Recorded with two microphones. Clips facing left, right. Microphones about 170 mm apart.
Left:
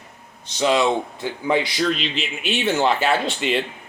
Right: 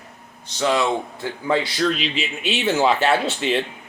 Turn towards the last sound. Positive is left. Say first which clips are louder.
# right 1 dB
turn(degrees=0)  # may be behind; listen again after turning